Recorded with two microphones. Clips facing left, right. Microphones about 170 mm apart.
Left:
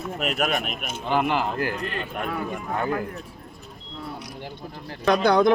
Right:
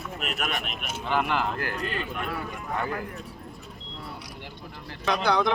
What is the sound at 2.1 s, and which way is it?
Speech, 50° left (ahead or behind).